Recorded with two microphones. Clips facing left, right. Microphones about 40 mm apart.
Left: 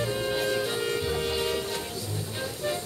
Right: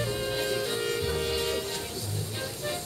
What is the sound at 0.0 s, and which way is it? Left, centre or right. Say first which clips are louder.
Music: left 2 dB; centre.